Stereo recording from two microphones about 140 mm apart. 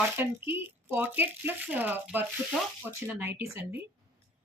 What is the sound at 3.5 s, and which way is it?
Speech, 15° right (ahead or behind).